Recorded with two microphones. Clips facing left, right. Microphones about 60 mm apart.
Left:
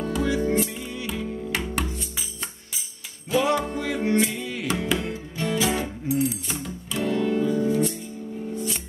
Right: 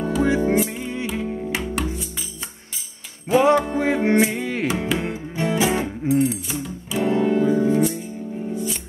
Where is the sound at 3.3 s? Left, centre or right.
Right.